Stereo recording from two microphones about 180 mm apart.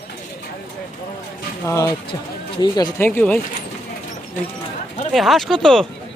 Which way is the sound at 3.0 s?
10° left (ahead or behind).